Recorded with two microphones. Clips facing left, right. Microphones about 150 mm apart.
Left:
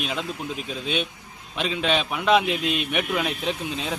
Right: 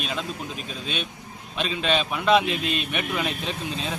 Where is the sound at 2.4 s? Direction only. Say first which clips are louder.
Left 2 dB; 75° left (ahead or behind).